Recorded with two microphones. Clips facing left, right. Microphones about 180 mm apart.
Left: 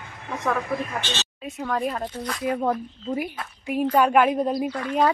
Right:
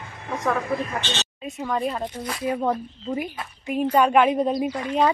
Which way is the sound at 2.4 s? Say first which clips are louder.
Even; centre (ahead or behind).